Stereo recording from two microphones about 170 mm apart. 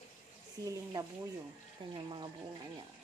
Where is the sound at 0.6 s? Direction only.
20° right (ahead or behind).